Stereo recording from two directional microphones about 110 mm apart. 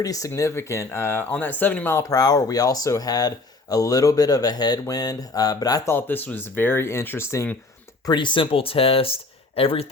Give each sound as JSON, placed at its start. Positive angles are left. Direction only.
{"t": 0.0, "sound": "speech", "side_deg": 30}
{"t": 5.9, "sound": "speech", "side_deg": 20}
{"t": 8.0, "sound": "speech", "side_deg": 45}